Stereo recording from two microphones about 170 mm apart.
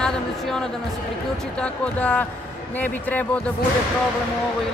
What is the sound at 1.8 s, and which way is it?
Speech, 10° left (ahead or behind).